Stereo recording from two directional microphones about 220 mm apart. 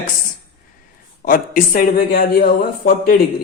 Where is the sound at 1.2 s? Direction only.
40° left (ahead or behind).